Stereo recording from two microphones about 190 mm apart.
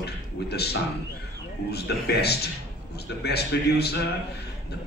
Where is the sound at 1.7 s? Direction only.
60° left (ahead or behind).